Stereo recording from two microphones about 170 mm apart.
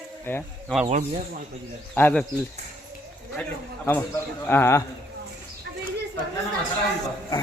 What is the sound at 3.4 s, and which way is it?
A man's voice, 10° left (ahead or behind).